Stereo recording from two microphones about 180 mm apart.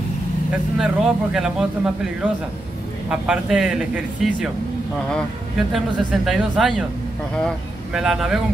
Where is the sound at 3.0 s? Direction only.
5° right (ahead or behind).